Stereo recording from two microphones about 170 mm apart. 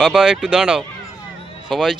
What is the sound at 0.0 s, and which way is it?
Speech, 5° right (ahead or behind).